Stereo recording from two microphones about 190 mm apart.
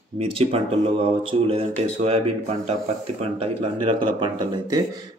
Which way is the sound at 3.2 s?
30° right (ahead or behind).